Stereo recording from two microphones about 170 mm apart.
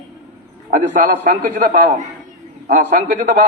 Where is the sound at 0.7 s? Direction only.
50° right (ahead or behind).